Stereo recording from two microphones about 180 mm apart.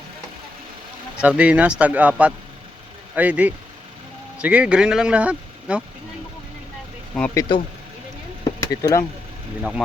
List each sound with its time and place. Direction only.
1.1 s speech: 5° right (ahead or behind)
7.3 s speech: 25° left (ahead or behind)
8.6 s speech: 20° left (ahead or behind)